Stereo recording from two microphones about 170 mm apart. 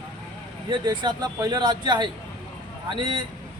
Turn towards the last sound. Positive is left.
turn(degrees=-30)  # may be behind; listen again after turning